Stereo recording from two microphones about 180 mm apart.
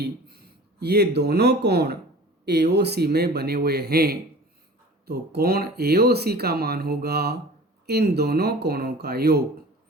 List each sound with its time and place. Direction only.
0.0 s speech: 65° right (ahead or behind)